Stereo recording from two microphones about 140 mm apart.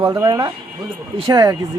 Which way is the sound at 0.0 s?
30° right (ahead or behind).